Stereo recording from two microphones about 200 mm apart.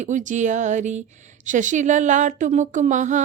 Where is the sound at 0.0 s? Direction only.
40° right (ahead or behind).